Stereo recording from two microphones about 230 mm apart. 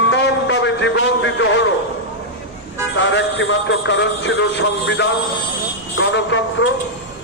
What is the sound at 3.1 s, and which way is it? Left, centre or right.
A man's voice, left.